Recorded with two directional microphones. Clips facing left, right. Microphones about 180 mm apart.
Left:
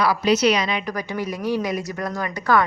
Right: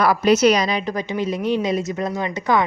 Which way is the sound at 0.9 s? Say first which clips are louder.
Right 4 dB; 25° right (ahead or behind).